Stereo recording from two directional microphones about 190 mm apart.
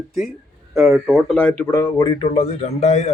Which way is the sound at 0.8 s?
5° right (ahead or behind).